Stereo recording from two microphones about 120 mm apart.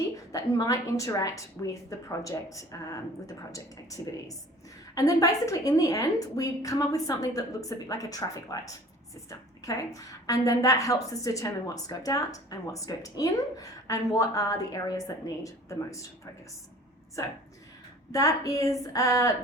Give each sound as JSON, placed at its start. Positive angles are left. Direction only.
{"t": 0.3, "sound": "a woman's voice", "side_deg": 30}
{"t": 18.1, "sound": "a woman's voice", "side_deg": 30}